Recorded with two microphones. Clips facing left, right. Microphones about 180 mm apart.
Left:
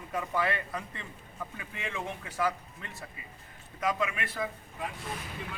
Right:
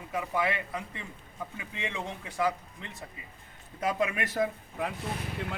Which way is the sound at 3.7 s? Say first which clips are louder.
Right 2 dB; 35° right (ahead or behind).